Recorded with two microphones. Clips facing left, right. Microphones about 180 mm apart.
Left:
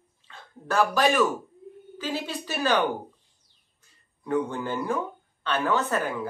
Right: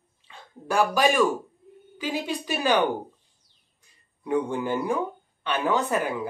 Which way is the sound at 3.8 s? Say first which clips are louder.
Right 1 dB; 15° right (ahead or behind).